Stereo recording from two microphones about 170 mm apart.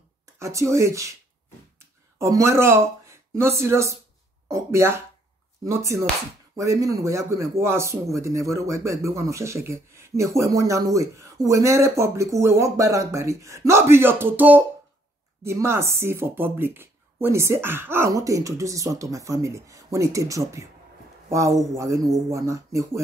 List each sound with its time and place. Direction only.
0.4 s speech: 15° right (ahead or behind)
1.8 s a sound: 15° right (ahead or behind)
3.1 s speech: 15° right (ahead or behind)